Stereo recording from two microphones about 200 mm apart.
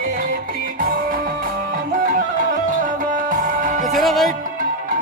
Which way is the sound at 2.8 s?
40° right (ahead or behind).